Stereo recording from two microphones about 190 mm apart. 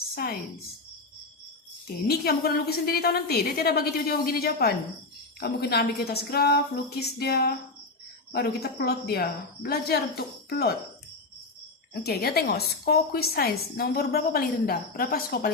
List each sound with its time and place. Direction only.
0.1 s a woman's voice: 55° left (ahead or behind)
2.0 s a woman's voice: 55° left (ahead or behind)
12.0 s a woman's voice: 55° left (ahead or behind)